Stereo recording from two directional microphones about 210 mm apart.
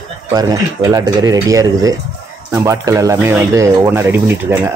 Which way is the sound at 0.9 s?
15° right (ahead or behind).